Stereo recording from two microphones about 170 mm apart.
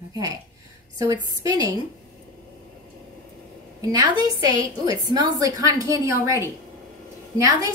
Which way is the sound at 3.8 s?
25° right (ahead or behind).